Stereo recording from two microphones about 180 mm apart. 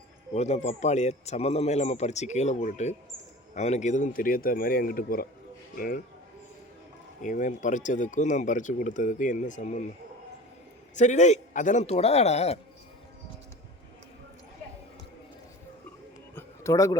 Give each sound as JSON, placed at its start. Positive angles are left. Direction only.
{"t": 0.3, "sound": "speech", "side_deg": 40}
{"t": 7.2, "sound": "speech", "side_deg": 45}
{"t": 10.9, "sound": "speech", "side_deg": 40}
{"t": 16.3, "sound": "a sound", "side_deg": 15}